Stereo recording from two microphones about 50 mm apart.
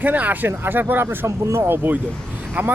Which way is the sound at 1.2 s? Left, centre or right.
Right.